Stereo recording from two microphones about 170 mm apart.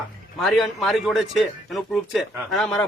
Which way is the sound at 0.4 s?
Centre (ahead or behind).